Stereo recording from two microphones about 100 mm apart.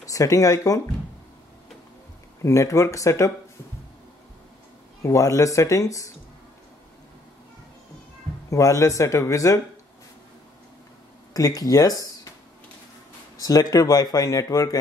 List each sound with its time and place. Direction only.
0.0 s speech: 35° left (ahead or behind)
2.4 s speech: 30° left (ahead or behind)
5.0 s speech: 35° left (ahead or behind)
8.5 s speech: 30° left (ahead or behind)
11.3 s speech: 35° left (ahead or behind)
13.4 s speech: 40° left (ahead or behind)